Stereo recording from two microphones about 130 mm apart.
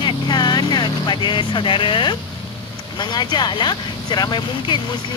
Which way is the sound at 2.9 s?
35° left (ahead or behind).